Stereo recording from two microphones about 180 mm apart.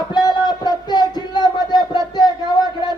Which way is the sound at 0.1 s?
25° left (ahead or behind).